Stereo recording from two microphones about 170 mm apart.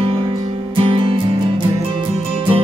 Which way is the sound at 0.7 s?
30° right (ahead or behind).